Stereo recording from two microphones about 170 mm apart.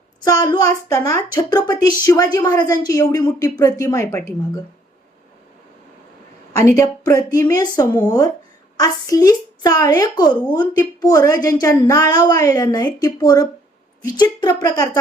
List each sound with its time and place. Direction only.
0.3 s a woman's voice: 20° left (ahead or behind)
6.7 s a woman's voice: 20° left (ahead or behind)